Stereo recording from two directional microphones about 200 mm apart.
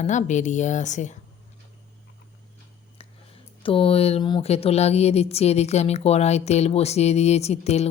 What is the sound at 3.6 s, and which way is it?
Speech, 25° left (ahead or behind).